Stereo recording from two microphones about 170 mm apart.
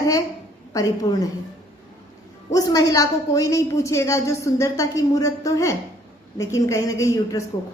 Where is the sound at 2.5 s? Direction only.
20° left (ahead or behind).